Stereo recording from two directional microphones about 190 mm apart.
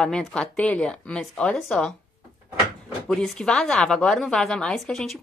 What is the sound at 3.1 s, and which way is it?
A woman's voice, 5° left (ahead or behind).